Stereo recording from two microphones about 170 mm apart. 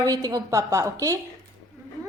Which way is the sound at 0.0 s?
20° right (ahead or behind).